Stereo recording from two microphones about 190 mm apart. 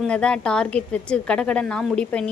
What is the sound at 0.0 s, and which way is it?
A woman's voice, 5° left (ahead or behind).